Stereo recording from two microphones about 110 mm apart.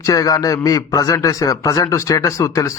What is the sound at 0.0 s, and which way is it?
A man's voice, 30° left (ahead or behind).